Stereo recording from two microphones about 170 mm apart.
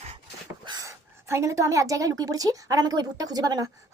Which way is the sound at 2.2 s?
20° right (ahead or behind).